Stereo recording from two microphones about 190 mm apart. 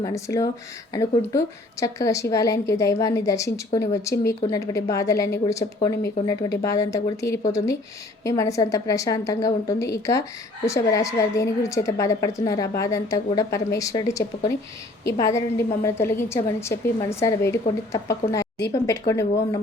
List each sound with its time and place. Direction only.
0.0 s a woman's voice: 15° left (ahead or behind)